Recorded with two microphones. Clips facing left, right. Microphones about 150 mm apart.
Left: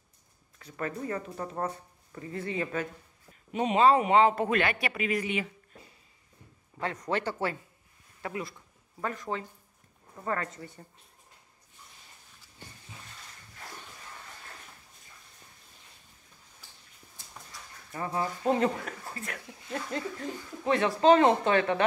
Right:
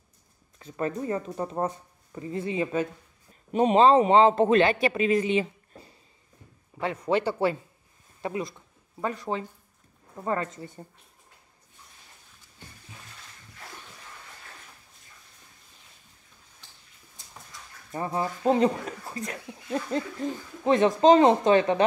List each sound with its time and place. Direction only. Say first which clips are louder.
0.6 s speech: right 5 dB; 25° right (ahead or behind)
3.5 s speech: right 7 dB; 35° right (ahead or behind)
3.8 s speech: right 3 dB; 25° right (ahead or behind)
6.8 s a man's voice: right 5 dB; 15° right (ahead or behind)
17.9 s speech: right 3 dB; 25° right (ahead or behind)